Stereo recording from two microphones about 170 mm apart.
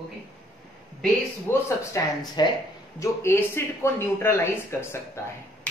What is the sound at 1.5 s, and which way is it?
Speech, 15° left (ahead or behind).